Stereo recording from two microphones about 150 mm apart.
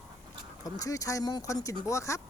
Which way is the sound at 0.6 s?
25° left (ahead or behind).